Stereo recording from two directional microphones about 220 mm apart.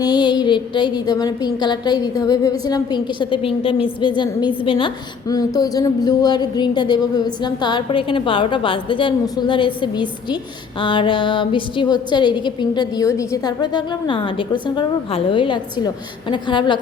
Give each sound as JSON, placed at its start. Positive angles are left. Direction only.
{"t": 0.0, "sound": "a woman's voice", "side_deg": 20}